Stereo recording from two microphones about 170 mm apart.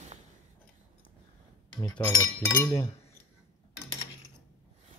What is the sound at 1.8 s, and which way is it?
Speech, 20° left (ahead or behind).